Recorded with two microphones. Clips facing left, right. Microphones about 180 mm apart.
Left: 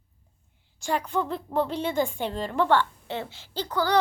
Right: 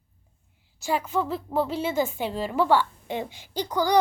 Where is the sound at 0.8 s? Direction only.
5° right (ahead or behind).